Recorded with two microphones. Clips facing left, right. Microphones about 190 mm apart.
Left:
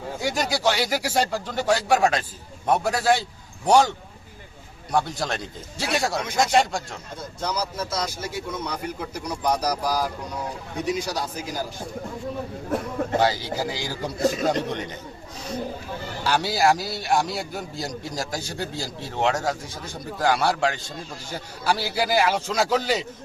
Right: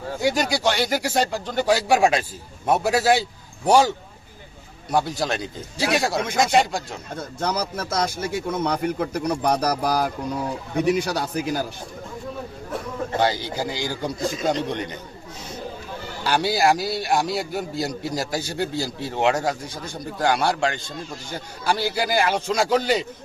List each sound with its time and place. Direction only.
0.3 s speech: centre (ahead or behind)
1.5 s a man's voice: 5° right (ahead or behind)
4.9 s a man's voice: centre (ahead or behind)
7.2 s speech: 55° right (ahead or behind)
13.1 s a man's voice: 5° left (ahead or behind)
16.2 s a man's voice: centre (ahead or behind)